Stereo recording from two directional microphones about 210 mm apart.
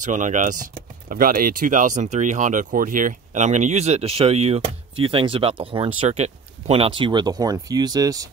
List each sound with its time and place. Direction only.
0.0 s speech: 35° right (ahead or behind); by 8.3 s 15° right (ahead or behind)